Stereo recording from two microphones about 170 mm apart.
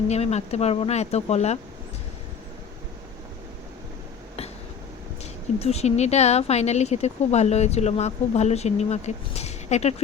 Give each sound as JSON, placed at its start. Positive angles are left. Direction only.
{"t": 0.1, "sound": "speech", "side_deg": 40}
{"t": 5.2, "sound": "speech", "side_deg": 40}